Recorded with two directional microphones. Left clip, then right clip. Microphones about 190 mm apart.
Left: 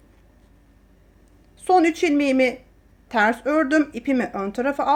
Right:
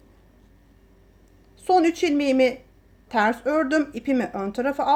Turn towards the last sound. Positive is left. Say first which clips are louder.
# left 1 dB
turn(degrees=10)  # may be behind; listen again after turning